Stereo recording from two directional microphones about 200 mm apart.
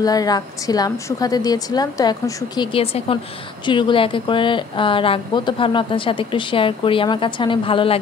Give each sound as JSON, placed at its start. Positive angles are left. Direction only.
{"t": 0.0, "sound": "a woman's voice", "side_deg": 20}